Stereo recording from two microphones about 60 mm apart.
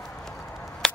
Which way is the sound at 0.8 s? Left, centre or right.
Centre.